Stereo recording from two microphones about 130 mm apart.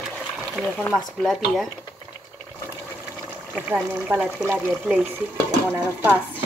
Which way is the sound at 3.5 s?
10° right (ahead or behind).